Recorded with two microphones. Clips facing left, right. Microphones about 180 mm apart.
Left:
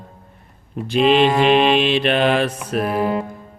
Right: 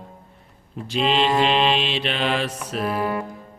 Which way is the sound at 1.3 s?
10° left (ahead or behind).